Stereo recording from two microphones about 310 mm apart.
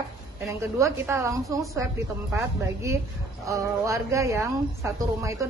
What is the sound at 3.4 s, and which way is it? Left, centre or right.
Speech, centre.